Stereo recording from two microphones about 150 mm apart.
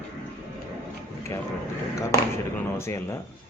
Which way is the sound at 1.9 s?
15° left (ahead or behind).